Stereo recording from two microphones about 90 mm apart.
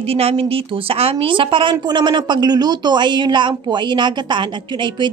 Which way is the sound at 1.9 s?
55° right (ahead or behind).